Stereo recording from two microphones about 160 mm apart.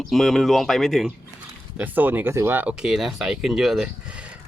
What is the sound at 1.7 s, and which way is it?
Speech, 10° right (ahead or behind).